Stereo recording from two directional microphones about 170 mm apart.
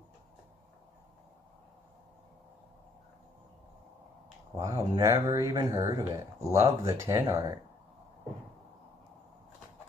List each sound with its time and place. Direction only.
4.6 s speech: 20° right (ahead or behind)